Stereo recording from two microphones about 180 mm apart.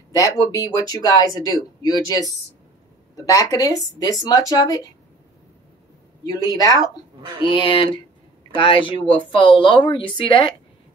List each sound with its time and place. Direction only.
0.1 s speech: 20° left (ahead or behind)
6.2 s speech: 20° left (ahead or behind)